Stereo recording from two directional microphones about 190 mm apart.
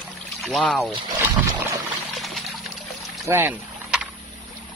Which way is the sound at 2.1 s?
Centre (ahead or behind).